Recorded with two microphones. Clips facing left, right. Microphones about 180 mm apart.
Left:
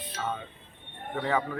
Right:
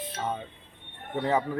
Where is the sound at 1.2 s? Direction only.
25° right (ahead or behind).